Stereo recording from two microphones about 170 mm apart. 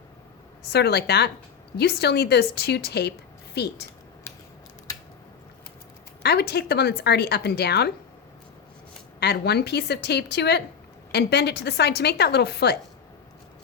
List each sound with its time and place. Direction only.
0.7 s a woman's voice: 75° left (ahead or behind)
4.3 s typing: 15° left (ahead or behind)
6.2 s a woman's voice: 70° left (ahead or behind)
9.2 s a woman's voice: 70° left (ahead or behind)